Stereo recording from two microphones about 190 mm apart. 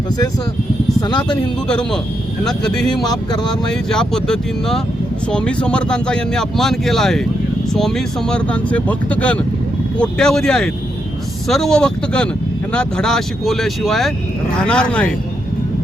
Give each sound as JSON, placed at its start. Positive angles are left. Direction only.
{"t": 1.0, "sound": "speech", "side_deg": 25}
{"t": 1.6, "sound": "speech", "side_deg": 5}
{"t": 2.9, "sound": "speech", "side_deg": 20}
{"t": 3.7, "sound": "speech", "side_deg": 5}